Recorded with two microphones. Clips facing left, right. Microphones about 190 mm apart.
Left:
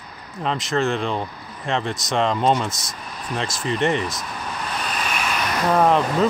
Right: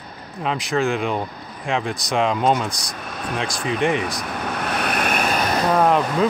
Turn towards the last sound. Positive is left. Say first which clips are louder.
# even
turn(degrees=0)  # may be behind; listen again after turning